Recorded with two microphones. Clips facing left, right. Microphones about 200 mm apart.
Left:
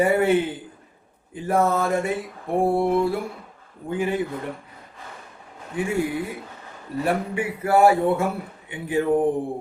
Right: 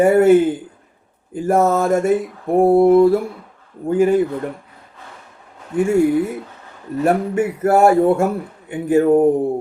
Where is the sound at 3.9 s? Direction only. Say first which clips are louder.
Right 10 dB; 45° right (ahead or behind).